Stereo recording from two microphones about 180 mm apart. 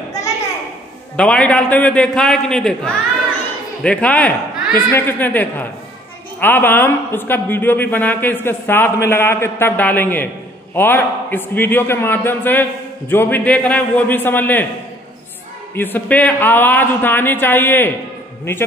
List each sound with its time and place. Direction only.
1.1 s a man's voice: 5° left (ahead or behind)
15.7 s speech: 10° left (ahead or behind)